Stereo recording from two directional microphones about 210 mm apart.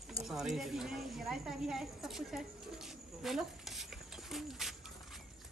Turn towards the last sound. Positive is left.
turn(degrees=0)  # may be behind; listen again after turning